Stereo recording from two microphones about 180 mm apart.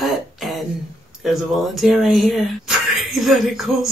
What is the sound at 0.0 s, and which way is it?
Throat clearing, centre (ahead or behind).